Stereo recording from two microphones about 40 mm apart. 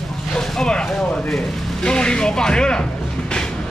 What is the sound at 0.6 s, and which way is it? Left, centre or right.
Speech, centre.